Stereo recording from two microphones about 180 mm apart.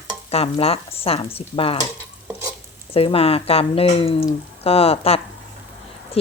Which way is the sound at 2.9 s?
30° left (ahead or behind).